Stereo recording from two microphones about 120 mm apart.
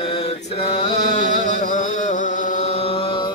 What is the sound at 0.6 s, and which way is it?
Music, 65° left (ahead or behind).